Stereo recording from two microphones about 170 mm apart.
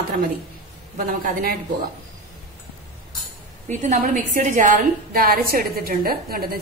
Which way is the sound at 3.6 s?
50° right (ahead or behind).